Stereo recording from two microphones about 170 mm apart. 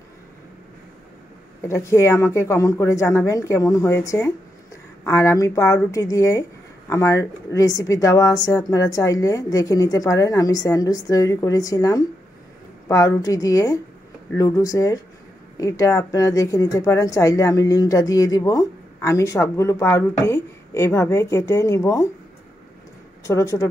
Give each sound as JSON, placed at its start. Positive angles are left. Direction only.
{"t": 1.7, "sound": "a woman's voice", "side_deg": 15}
{"t": 23.2, "sound": "a woman's voice", "side_deg": 20}